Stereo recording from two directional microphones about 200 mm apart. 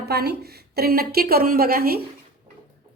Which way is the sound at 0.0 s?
55° right (ahead or behind).